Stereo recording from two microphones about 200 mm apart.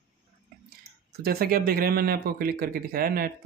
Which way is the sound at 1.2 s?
50° right (ahead or behind).